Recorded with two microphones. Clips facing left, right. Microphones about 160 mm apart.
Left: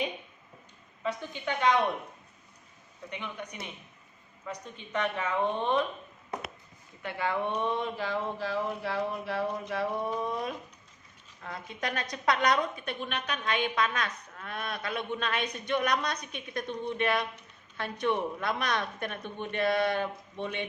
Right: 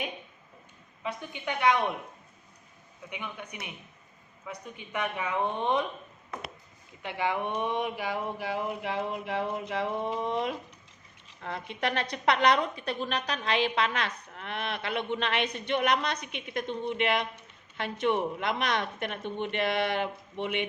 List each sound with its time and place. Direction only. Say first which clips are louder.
1.0 s speech: left 2 dB; 15° right (ahead or behind)
3.1 s speech: left 1 dB; 10° right (ahead or behind)
7.0 s a woman's voice: right 1 dB; 15° right (ahead or behind)